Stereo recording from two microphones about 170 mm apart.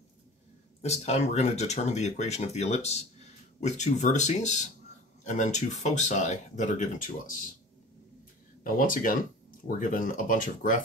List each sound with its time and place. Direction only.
0.8 s speech: 40° left (ahead or behind)
8.6 s speech: 50° left (ahead or behind)